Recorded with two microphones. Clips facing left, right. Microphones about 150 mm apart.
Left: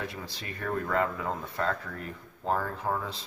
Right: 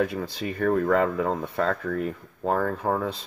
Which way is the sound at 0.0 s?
55° right (ahead or behind).